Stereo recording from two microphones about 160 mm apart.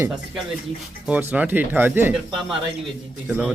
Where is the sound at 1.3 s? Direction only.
10° right (ahead or behind).